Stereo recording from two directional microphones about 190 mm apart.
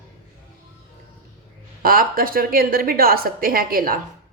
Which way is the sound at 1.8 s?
50° right (ahead or behind).